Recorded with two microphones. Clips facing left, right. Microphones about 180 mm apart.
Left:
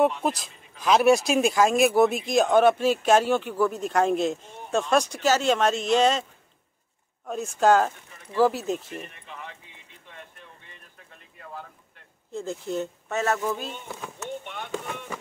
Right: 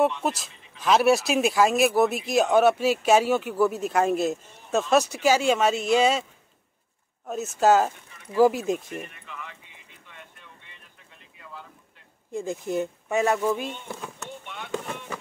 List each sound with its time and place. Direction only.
0.2 s speech: centre (ahead or behind)
7.2 s speech: 5° right (ahead or behind)
9.0 s a sound: 30° left (ahead or behind)
11.3 s boat: 50° left (ahead or behind)
12.3 s speech: 15° right (ahead or behind)
14.4 s boat: 50° left (ahead or behind)